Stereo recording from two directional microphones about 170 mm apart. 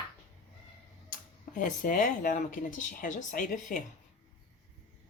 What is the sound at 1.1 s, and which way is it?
Speech, 50° left (ahead or behind).